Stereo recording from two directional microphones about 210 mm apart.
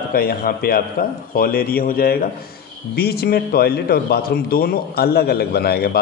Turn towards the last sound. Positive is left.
turn(degrees=50)  # may be behind; listen again after turning